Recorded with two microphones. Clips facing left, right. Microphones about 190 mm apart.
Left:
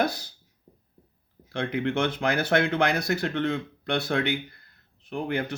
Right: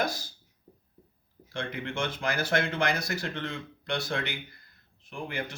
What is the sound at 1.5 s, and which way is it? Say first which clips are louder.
Speech: left 7 dB; 60° left (ahead or behind).